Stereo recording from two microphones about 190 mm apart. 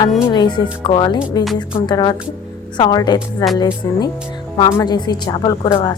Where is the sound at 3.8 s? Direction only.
20° left (ahead or behind).